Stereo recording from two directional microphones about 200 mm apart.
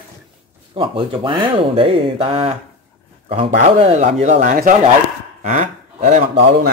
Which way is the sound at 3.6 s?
35° right (ahead or behind).